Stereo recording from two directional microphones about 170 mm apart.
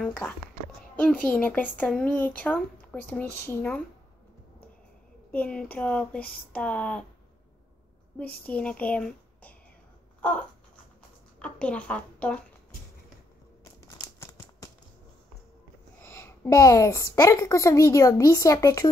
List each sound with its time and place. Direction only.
0.0 s speech: 5° left (ahead or behind)
5.3 s speech: 5° left (ahead or behind)
8.5 s a child's voice: 10° left (ahead or behind)
11.3 s a woman's voice: 5° left (ahead or behind)
13.8 s crumpling: 20° left (ahead or behind)
16.0 s a woman's voice: 15° left (ahead or behind)